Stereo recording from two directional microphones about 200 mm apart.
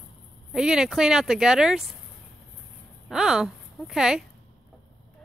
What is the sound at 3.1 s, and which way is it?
Speech, 5° right (ahead or behind).